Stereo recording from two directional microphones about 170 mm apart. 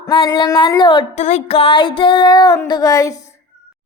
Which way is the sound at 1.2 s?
40° left (ahead or behind).